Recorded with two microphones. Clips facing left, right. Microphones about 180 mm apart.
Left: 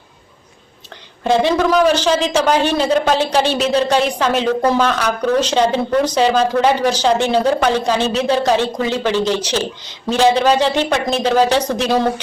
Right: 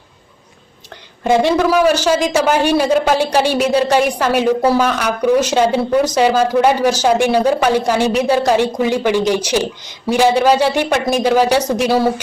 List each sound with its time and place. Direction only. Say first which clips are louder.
1.2 s speech: right 1 dB; 10° right (ahead or behind)